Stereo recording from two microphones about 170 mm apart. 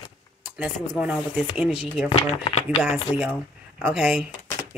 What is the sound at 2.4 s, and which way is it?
Speech, 35° left (ahead or behind).